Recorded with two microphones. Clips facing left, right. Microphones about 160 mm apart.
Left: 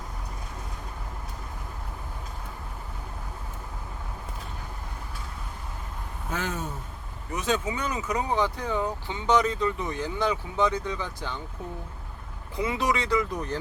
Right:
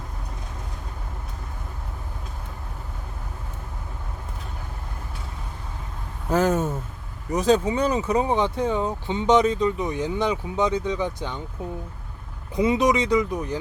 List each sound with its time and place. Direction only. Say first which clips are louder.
6.3 s speech: right 11 dB; 45° right (ahead or behind); by 11.3 s 20° right (ahead or behind)
12.5 s speech: right 7 dB; 20° right (ahead or behind)